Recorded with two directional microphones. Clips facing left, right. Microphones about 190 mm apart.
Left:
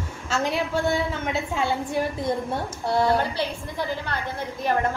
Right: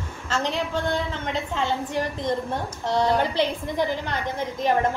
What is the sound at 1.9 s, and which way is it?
A woman's voice, 10° left (ahead or behind).